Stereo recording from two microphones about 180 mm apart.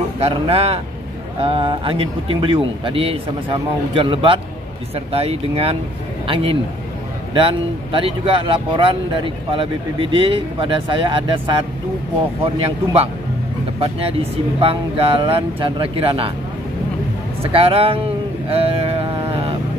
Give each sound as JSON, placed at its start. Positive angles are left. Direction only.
{"t": 0.2, "sound": "speech", "side_deg": -35}
{"t": 14.6, "sound": "speech", "side_deg": -30}
{"t": 17.4, "sound": "a sound", "side_deg": -30}